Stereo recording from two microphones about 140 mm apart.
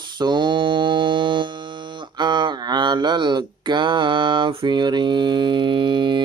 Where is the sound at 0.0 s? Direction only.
35° right (ahead or behind).